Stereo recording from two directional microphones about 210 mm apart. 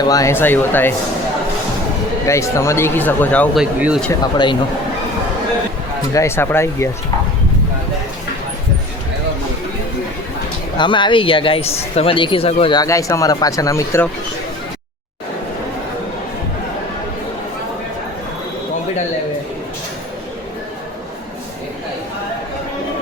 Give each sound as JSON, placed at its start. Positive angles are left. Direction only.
{"t": 0.0, "sound": "speech", "side_deg": 15}
{"t": 2.2, "sound": "speech", "side_deg": 15}
{"t": 4.2, "sound": "speech", "side_deg": 20}
{"t": 6.1, "sound": "speech", "side_deg": 10}
{"t": 10.8, "sound": "speech", "side_deg": 20}